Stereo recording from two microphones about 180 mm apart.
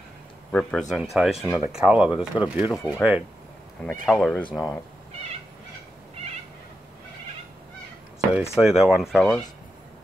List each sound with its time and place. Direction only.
0.5 s speech: 5° left (ahead or behind)
3.8 s speech: 5° left (ahead or behind)
8.3 s speech: 5° right (ahead or behind)